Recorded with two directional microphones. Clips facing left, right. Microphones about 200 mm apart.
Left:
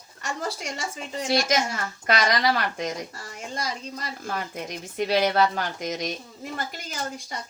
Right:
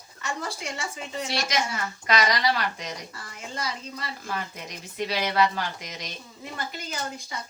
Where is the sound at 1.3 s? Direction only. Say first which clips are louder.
Left 6 dB; 45° left (ahead or behind).